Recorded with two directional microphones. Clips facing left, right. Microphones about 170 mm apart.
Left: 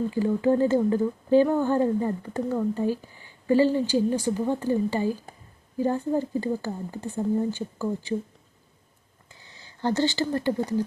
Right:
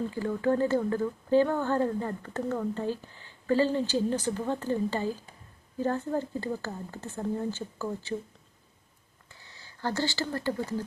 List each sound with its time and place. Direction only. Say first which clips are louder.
0.1 s speech: left 6 dB; 15° left (ahead or behind)
9.3 s speech: left 2 dB; 20° left (ahead or behind)